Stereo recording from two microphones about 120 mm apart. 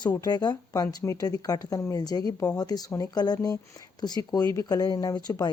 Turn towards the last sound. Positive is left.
turn(degrees=35)  # may be behind; listen again after turning